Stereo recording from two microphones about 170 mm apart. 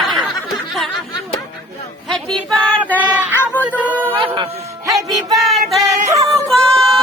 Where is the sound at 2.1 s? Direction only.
Centre (ahead or behind).